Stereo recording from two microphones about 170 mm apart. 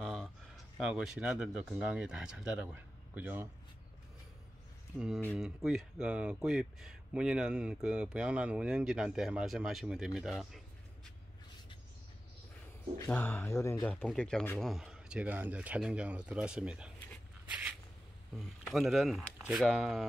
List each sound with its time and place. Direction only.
0.0 s a sound: centre (ahead or behind)
0.7 s speech: centre (ahead or behind)
4.9 s speech: centre (ahead or behind)
13.0 s speech: 15° left (ahead or behind)
13.9 s speech: centre (ahead or behind)
17.5 s a sound: 10° right (ahead or behind)
18.3 s speech: centre (ahead or behind)